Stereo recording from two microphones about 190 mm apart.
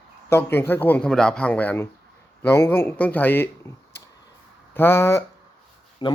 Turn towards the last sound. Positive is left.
turn(degrees=25)  # may be behind; listen again after turning